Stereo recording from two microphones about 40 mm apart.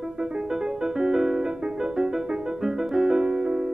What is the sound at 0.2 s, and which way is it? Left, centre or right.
Music, centre.